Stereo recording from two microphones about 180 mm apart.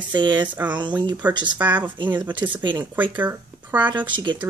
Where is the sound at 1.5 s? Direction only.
10° right (ahead or behind).